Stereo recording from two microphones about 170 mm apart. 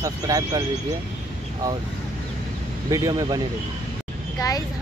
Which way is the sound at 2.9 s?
20° right (ahead or behind).